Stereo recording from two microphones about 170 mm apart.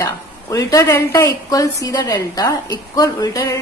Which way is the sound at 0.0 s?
20° left (ahead or behind).